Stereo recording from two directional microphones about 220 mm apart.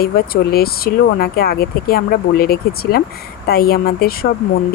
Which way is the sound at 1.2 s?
45° left (ahead or behind).